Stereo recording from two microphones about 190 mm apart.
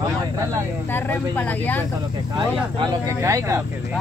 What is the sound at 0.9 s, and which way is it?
Speech, 10° left (ahead or behind).